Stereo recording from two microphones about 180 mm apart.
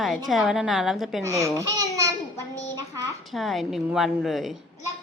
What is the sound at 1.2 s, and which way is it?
Speech, 15° right (ahead or behind).